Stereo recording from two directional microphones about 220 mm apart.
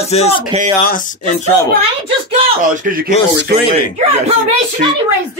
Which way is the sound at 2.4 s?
30° right (ahead or behind).